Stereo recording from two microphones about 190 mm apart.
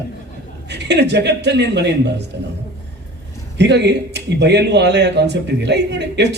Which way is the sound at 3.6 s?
65° right (ahead or behind).